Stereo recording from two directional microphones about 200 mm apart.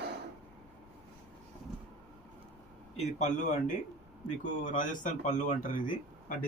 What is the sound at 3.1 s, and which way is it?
Speech, 35° left (ahead or behind).